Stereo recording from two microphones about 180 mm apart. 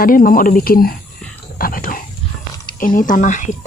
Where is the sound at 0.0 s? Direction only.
55° left (ahead or behind).